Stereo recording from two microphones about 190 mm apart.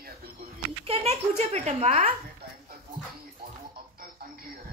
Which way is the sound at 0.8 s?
30° right (ahead or behind).